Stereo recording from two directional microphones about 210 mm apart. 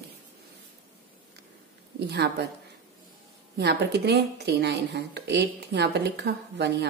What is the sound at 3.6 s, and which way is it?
A woman's voice, 50° right (ahead or behind).